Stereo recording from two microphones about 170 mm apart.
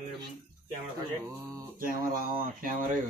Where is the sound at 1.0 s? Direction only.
25° right (ahead or behind).